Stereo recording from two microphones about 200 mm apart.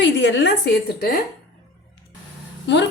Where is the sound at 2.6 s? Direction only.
60° left (ahead or behind).